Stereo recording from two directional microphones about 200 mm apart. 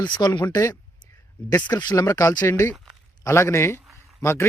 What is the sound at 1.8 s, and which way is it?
Speech, 20° left (ahead or behind).